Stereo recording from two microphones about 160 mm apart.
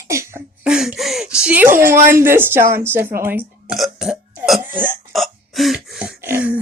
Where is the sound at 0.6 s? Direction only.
5° right (ahead or behind).